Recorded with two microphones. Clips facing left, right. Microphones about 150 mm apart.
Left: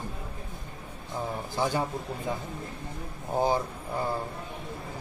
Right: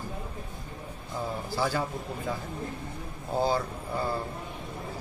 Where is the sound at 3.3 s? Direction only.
15° left (ahead or behind).